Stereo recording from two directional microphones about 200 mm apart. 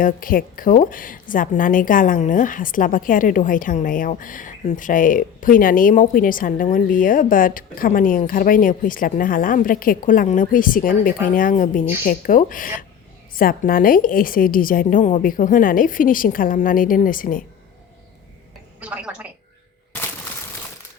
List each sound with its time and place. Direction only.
0.0 s a woman's voice: 45° left (ahead or behind)
18.8 s a woman's voice: 5° right (ahead or behind)